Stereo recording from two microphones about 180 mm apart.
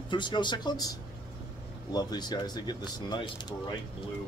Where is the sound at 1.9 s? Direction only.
20° left (ahead or behind).